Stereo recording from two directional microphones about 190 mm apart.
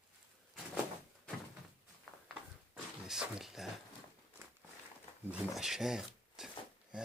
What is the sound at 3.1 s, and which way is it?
Speech, 5° right (ahead or behind).